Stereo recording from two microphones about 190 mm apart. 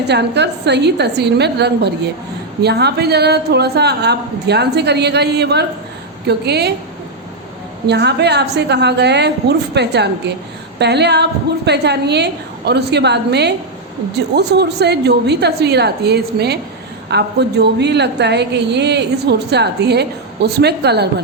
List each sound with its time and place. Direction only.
0.0 s a woman's voice: 60° right (ahead or behind)
7.9 s a woman's voice: 60° right (ahead or behind)